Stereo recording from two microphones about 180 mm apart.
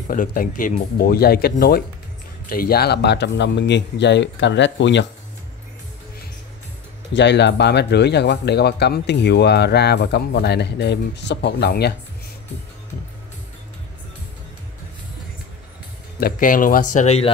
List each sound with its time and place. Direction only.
0.1 s speech: 50° left (ahead or behind); by 5.0 s 90° left
7.2 s speech: 75° left (ahead or behind)
16.2 s speech: 50° left (ahead or behind)